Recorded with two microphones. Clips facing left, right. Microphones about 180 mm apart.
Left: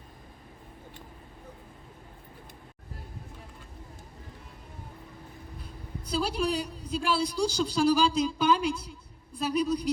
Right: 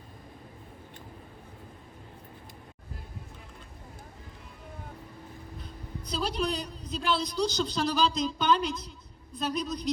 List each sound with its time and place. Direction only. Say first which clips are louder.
5.6 s a woman's voice: left 1 dB; 10° left (ahead or behind)